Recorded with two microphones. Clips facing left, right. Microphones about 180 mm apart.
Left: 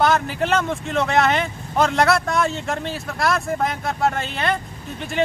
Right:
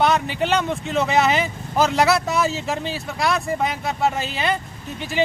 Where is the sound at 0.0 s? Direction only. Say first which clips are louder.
Even; centre (ahead or behind).